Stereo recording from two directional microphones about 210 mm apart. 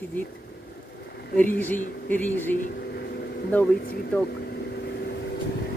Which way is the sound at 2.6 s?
50° left (ahead or behind).